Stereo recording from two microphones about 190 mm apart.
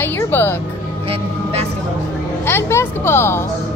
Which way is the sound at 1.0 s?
30° right (ahead or behind).